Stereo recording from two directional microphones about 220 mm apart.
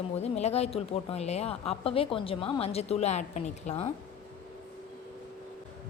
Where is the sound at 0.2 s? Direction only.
30° left (ahead or behind).